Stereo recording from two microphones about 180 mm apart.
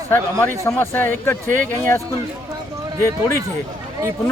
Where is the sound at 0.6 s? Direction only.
10° left (ahead or behind).